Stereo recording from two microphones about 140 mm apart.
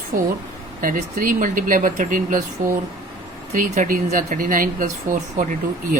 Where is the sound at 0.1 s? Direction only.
80° right.